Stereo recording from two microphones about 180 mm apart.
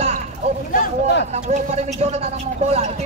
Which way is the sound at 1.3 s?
35° right (ahead or behind).